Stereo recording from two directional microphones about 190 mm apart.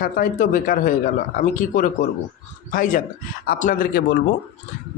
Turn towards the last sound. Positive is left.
turn(degrees=60)  # may be behind; listen again after turning